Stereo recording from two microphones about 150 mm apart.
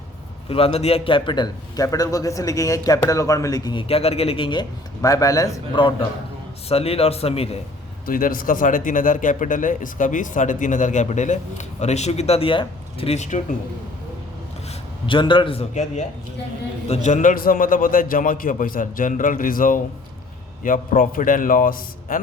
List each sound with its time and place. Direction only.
0.4 s a man's voice: 40° left (ahead or behind)
5.0 s a man's voice: 25° left (ahead or behind)
5.8 s speech: 35° left (ahead or behind)
8.0 s speech: 70° left (ahead or behind); by 13.4 s 50° left (ahead or behind)
15.0 s speech: 35° left (ahead or behind)
15.7 s speech: 55° left (ahead or behind)